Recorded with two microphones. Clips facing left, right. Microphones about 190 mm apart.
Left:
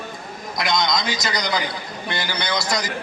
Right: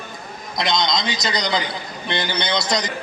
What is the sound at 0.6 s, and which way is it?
A man's voice, 25° right (ahead or behind).